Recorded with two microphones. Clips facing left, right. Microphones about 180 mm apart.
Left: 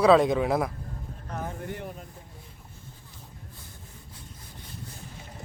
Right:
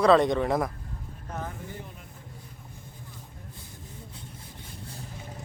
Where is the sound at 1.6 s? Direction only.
65° left (ahead or behind).